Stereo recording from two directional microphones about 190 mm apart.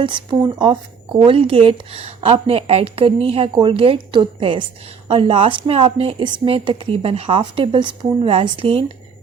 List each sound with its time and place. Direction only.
0.0 s a woman's voice: 25° right (ahead or behind)